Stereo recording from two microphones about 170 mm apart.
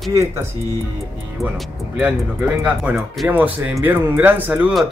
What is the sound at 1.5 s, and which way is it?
Speech, 5° right (ahead or behind).